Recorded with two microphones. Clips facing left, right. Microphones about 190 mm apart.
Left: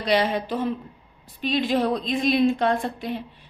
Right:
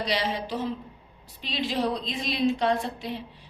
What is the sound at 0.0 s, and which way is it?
A woman's voice, 55° left (ahead or behind).